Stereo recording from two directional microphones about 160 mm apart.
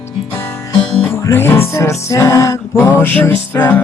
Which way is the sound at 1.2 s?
15° left (ahead or behind).